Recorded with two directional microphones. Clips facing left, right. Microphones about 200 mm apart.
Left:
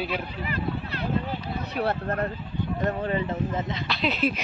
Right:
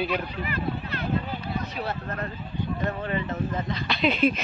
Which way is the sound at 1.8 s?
60° left (ahead or behind).